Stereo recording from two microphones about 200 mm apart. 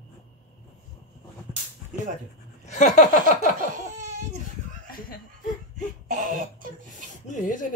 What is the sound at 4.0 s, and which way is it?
Baby cry, 35° right (ahead or behind).